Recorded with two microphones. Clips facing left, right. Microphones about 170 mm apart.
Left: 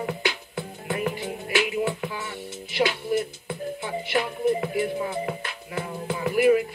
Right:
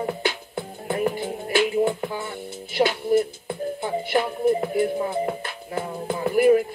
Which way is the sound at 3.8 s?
40° right (ahead or behind).